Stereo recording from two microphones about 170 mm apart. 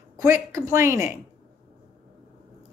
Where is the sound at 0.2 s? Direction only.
20° right (ahead or behind).